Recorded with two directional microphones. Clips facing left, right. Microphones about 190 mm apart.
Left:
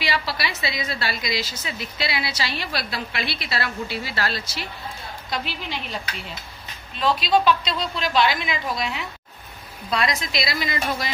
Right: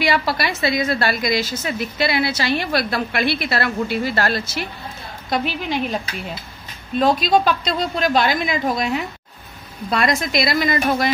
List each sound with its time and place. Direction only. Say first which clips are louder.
0.0 s a woman's voice: right 7 dB; 50° right (ahead or behind)
7.0 s a woman's voice: right 4 dB; 45° right (ahead or behind)